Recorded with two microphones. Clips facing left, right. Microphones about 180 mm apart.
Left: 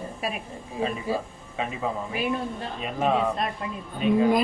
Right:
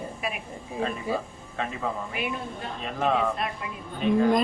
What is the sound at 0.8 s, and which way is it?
Speech, 10° left (ahead or behind).